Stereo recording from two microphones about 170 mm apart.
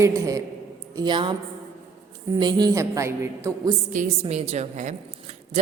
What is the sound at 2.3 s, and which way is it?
A woman's voice, 25° right (ahead or behind).